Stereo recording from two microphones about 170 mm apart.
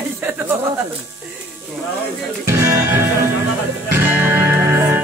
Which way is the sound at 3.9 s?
10° right (ahead or behind).